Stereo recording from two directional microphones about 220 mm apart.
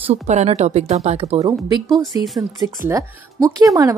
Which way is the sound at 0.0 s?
30° right (ahead or behind).